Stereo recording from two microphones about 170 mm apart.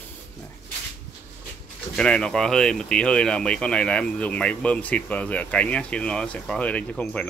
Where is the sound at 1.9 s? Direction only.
5° left (ahead or behind).